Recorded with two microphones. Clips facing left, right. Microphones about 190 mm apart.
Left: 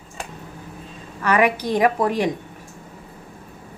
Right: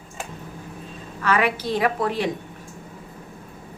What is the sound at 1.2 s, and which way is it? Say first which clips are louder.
A woman's voice: left 3 dB; 15° left (ahead or behind).